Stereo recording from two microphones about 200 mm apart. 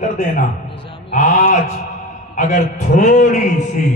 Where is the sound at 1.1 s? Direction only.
40° left (ahead or behind).